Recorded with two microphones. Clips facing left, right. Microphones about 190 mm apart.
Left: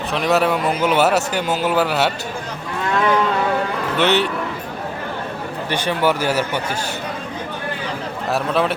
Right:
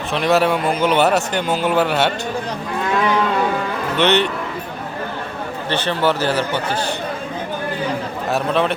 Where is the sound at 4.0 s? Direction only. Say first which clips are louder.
Right 1 dB; 5° left (ahead or behind).